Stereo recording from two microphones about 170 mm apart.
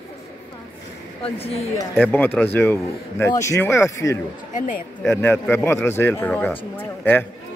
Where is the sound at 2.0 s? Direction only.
10° left (ahead or behind).